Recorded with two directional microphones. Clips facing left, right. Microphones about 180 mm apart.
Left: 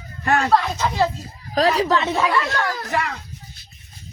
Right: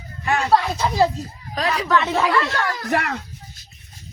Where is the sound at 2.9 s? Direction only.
65° right (ahead or behind).